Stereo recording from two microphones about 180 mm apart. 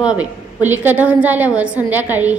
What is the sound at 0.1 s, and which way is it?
A woman's voice, 10° right (ahead or behind).